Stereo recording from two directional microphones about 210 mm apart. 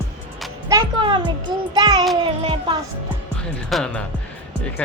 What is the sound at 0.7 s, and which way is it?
A child's voice, 20° right (ahead or behind).